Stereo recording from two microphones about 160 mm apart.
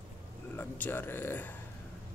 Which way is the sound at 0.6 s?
10° left (ahead or behind).